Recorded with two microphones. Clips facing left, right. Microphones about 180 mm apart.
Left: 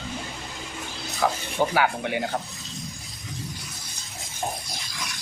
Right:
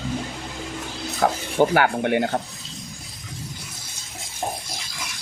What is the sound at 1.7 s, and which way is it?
Speech, 60° right (ahead or behind).